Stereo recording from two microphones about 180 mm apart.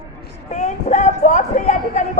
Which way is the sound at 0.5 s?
40° left (ahead or behind).